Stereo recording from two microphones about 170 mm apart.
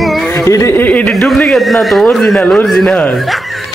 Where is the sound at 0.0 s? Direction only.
Centre (ahead or behind).